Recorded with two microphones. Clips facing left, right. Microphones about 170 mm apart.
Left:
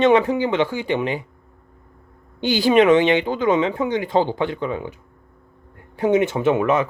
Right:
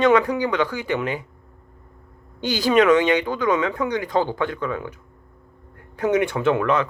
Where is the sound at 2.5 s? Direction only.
20° left (ahead or behind).